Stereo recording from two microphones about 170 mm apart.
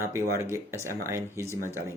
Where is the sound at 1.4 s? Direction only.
15° left (ahead or behind).